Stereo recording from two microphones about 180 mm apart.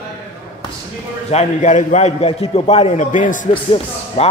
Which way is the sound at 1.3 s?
40° left (ahead or behind).